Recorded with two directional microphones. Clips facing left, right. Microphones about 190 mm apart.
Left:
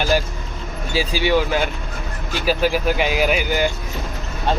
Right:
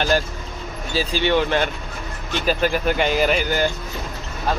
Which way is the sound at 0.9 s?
10° left (ahead or behind).